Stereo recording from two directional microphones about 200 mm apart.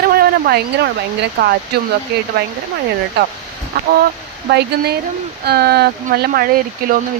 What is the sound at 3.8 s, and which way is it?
Speech, 50° right (ahead or behind).